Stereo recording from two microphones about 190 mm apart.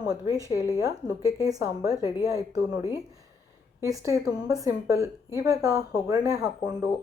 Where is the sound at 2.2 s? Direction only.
15° right (ahead or behind).